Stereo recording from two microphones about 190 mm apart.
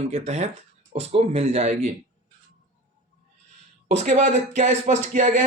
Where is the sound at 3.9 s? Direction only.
40° right (ahead or behind).